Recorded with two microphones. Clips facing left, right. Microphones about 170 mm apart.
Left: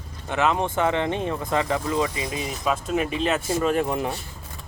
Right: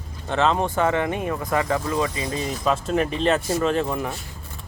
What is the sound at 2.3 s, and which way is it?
Speech, 5° left (ahead or behind).